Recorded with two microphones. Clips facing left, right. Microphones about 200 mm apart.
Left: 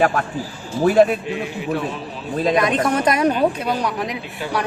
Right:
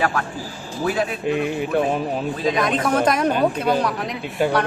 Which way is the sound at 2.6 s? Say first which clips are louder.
Right 1 dB; centre (ahead or behind).